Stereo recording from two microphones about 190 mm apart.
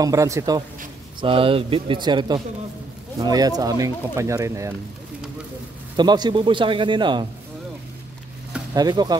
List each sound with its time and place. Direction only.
0.0 s speech: 15° right (ahead or behind)
1.2 s a man's voice: 30° right (ahead or behind)
5.9 s a man's voice: 20° right (ahead or behind)
8.7 s a man's voice: 20° right (ahead or behind)